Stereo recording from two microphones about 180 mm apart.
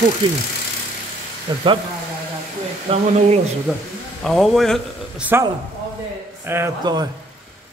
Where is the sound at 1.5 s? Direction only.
25° right (ahead or behind).